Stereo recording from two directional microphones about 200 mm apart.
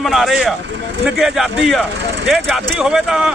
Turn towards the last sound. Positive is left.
turn(degrees=-5)  # may be behind; listen again after turning